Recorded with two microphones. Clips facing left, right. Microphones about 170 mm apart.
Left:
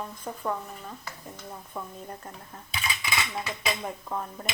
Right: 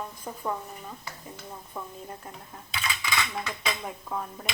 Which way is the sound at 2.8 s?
20° left (ahead or behind).